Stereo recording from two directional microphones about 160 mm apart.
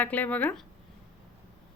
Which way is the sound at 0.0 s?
10° left (ahead or behind).